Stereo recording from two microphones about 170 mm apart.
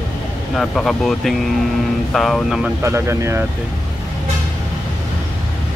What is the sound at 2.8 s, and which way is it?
Speech, 15° right (ahead or behind).